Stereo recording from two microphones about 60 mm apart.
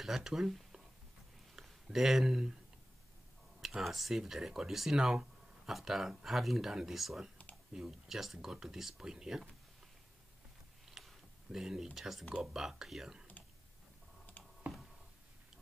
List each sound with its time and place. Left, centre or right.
0.0 s speech: centre
3.6 s speech: centre
10.9 s computer keyboard: centre
12.4 s speech: centre
14.7 s a sound: right